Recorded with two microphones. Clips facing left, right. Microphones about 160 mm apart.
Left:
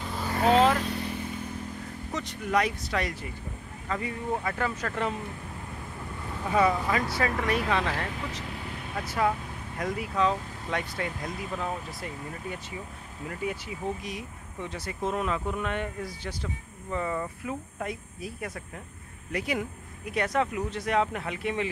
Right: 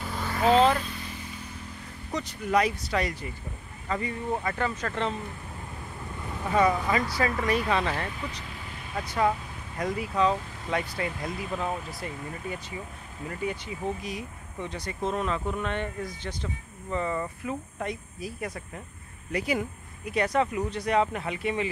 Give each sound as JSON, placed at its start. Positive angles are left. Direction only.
{"t": 0.7, "sound": "vehicle", "side_deg": 70}
{"t": 2.1, "sound": "speech", "side_deg": 0}
{"t": 6.4, "sound": "speech", "side_deg": 0}
{"t": 14.0, "sound": "speech", "side_deg": 0}